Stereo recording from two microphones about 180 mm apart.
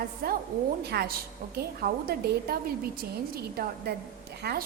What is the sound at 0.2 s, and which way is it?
A woman's voice, 55° right (ahead or behind).